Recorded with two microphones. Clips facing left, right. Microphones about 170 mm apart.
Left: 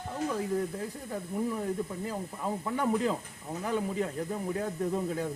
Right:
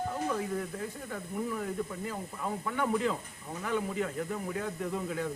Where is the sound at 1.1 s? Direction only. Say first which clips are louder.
Left 4 dB; 25° left (ahead or behind).